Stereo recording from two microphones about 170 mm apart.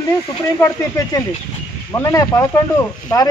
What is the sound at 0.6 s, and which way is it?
Speech, 20° left (ahead or behind).